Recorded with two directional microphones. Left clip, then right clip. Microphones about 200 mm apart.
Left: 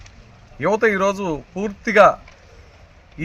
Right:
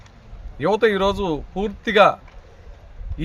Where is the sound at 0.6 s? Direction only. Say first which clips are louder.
Left 1 dB; 5° right (ahead or behind).